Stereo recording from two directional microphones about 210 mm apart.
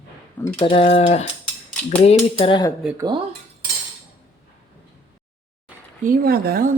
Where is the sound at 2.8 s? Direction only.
5° right (ahead or behind).